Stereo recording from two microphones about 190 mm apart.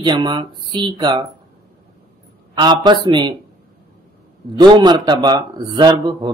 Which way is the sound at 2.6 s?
25° right (ahead or behind).